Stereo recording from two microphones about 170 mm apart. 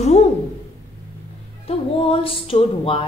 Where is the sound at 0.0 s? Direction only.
40° left (ahead or behind).